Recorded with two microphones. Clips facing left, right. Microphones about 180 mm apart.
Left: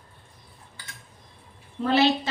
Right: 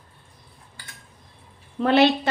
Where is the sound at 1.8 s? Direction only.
65° right (ahead or behind).